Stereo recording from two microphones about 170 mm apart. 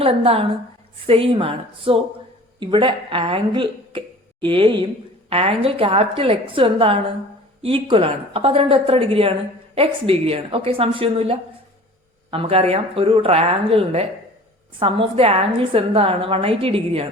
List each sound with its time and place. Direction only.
0.0 s a woman's voice: 35° right (ahead or behind)